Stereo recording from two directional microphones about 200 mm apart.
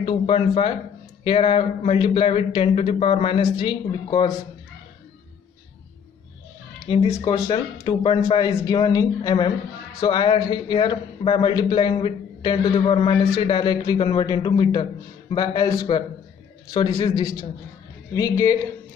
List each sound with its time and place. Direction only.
0.0 s a man's voice: 25° left (ahead or behind)
6.9 s a man's voice: 20° left (ahead or behind)
7.8 s a man's voice: 25° left (ahead or behind)